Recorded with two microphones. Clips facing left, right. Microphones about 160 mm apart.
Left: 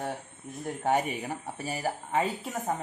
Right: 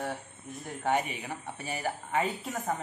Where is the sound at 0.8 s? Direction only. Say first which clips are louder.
Left 2 dB; 45° left (ahead or behind).